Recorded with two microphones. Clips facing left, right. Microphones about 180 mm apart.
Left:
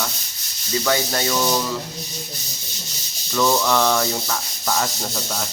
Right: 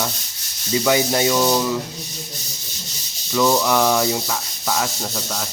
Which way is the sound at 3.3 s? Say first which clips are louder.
Right 2 dB; 10° right (ahead or behind).